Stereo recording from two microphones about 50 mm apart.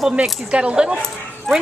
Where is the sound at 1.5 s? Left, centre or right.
Centre.